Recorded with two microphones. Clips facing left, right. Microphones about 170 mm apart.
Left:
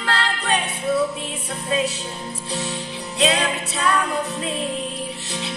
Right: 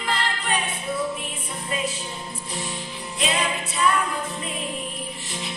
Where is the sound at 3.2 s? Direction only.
75° left (ahead or behind).